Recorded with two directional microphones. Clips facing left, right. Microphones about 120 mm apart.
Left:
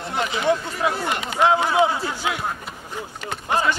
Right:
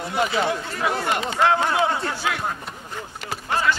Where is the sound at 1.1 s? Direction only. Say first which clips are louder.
Right 2 dB; 25° right (ahead or behind).